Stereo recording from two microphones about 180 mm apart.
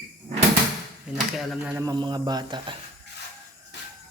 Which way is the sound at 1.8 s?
25° right (ahead or behind).